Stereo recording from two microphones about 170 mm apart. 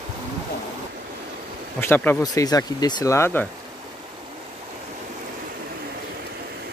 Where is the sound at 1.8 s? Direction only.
10° left (ahead or behind).